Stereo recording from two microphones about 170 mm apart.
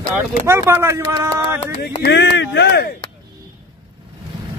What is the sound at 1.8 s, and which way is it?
Speech, 85° left.